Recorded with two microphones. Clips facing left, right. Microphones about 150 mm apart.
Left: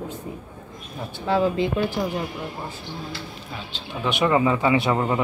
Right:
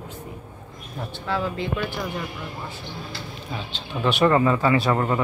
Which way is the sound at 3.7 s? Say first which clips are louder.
Right 2 dB; 10° left (ahead or behind).